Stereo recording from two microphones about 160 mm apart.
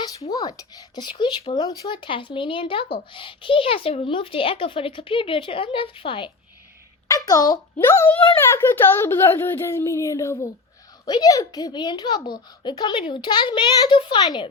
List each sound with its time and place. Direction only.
0.3 s a child's voice: 20° left (ahead or behind)
7.1 s a child's voice: 20° left (ahead or behind)